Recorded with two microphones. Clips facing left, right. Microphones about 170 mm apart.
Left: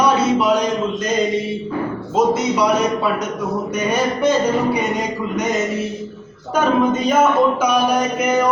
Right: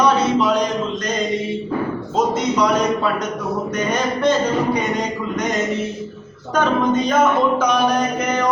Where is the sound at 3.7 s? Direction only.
10° left (ahead or behind).